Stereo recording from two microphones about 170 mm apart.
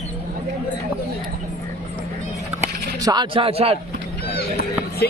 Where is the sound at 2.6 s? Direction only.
25° right (ahead or behind).